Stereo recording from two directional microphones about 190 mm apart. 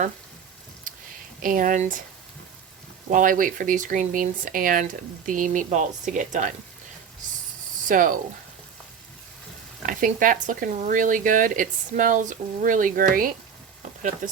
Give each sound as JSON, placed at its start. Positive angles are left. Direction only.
{"t": 0.9, "sound": "a sound", "side_deg": -45}
{"t": 1.4, "sound": "speech", "side_deg": -45}
{"t": 3.1, "sound": "speech", "side_deg": -45}
{"t": 7.9, "sound": "speech", "side_deg": -45}
{"t": 9.8, "sound": "speech", "side_deg": -45}